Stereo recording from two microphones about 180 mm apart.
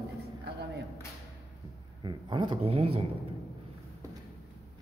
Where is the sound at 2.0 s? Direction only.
25° right (ahead or behind).